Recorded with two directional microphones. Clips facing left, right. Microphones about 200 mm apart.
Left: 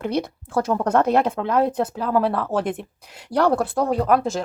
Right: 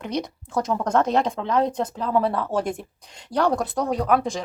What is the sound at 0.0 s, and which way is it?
Speech, 55° left (ahead or behind).